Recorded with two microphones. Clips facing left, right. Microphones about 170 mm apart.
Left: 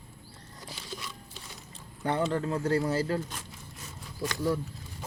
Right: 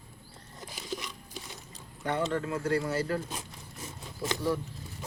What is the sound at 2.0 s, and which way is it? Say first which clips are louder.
Speech: left 2 dB; 30° left (ahead or behind).